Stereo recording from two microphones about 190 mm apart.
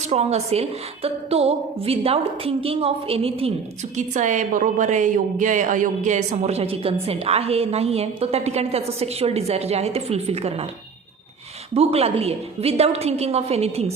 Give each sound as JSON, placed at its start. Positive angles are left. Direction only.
{"t": 0.1, "sound": "a woman's voice", "side_deg": -35}
{"t": 11.7, "sound": "a woman's voice", "side_deg": -30}